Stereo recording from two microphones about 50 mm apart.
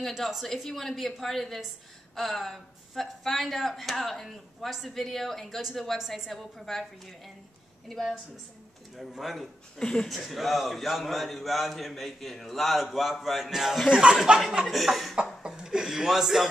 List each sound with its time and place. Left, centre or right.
0.1 s a man's voice: centre
8.9 s a man's voice: centre
9.8 s speech: centre
10.0 s a man's voice: centre
14.1 s speech: right
14.6 s a man's voice: centre
15.4 s speech: centre